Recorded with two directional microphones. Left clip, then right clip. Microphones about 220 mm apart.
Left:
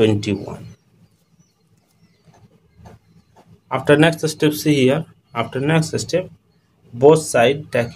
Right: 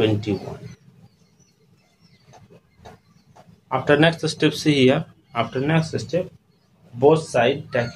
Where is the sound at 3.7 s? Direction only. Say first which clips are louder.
Left 3 dB; 40° left (ahead or behind).